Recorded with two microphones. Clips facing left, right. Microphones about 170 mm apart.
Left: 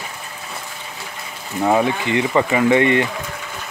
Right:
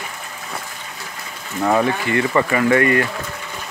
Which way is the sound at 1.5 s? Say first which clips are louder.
Left 1 dB; 15° left (ahead or behind).